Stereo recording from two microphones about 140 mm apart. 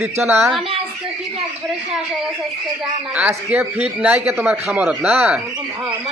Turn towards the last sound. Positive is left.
turn(degrees=-10)  # may be behind; listen again after turning